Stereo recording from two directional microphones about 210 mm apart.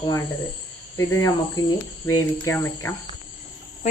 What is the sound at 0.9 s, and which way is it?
Speech, 15° left (ahead or behind).